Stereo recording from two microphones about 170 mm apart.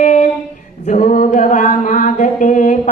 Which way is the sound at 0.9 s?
45° left (ahead or behind).